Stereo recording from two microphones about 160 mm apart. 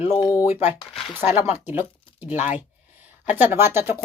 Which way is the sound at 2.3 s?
45° left (ahead or behind).